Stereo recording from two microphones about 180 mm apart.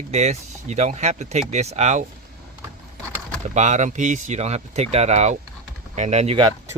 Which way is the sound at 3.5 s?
40° right (ahead or behind).